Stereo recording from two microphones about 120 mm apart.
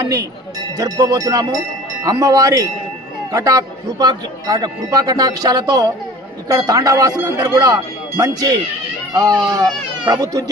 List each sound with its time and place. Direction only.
0.8 s speech: 30° right (ahead or behind)